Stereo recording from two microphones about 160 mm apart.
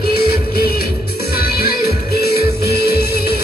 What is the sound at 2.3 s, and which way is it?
Music, 75° left (ahead or behind).